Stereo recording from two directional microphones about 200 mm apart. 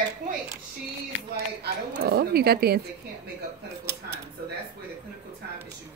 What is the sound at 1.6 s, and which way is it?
A woman's voice, 50° right (ahead or behind).